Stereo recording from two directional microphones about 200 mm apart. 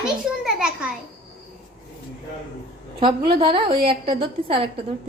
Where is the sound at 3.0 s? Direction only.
25° right (ahead or behind).